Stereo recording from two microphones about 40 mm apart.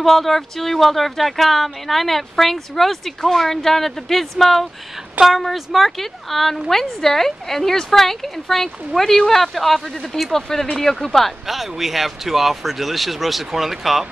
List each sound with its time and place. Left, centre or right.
0.0 s a woman's voice: centre
11.4 s speech: centre